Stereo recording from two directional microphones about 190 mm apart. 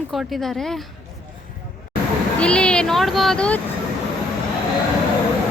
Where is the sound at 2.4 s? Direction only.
5° left (ahead or behind).